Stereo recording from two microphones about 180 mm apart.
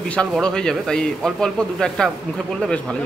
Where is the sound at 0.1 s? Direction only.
5° left (ahead or behind).